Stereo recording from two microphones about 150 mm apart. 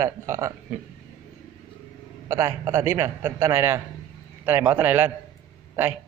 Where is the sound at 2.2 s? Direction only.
20° right (ahead or behind).